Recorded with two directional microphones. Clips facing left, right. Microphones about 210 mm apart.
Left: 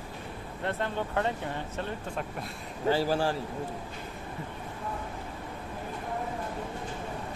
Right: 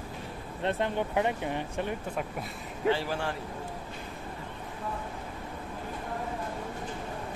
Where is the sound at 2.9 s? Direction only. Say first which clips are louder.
Left 8 dB; 35° left (ahead or behind).